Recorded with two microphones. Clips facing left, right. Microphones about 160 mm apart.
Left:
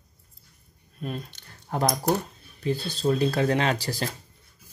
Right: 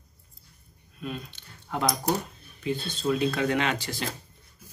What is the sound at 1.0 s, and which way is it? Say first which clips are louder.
Speech: left 2 dB; 40° left (ahead or behind).